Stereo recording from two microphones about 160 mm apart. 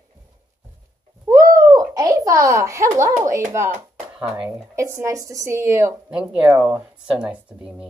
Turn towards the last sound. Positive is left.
turn(degrees=-5)  # may be behind; listen again after turning